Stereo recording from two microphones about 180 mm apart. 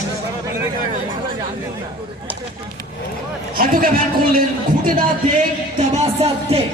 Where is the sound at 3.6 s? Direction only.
55° right (ahead or behind).